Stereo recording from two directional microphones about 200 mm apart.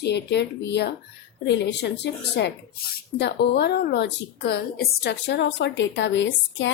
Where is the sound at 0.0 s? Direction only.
55° left (ahead or behind).